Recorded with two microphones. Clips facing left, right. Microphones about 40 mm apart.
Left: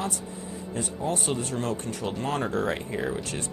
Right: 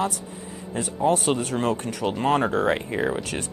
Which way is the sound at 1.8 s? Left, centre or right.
Right.